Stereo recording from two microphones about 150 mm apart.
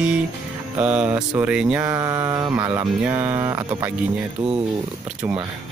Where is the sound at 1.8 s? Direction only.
25° right (ahead or behind).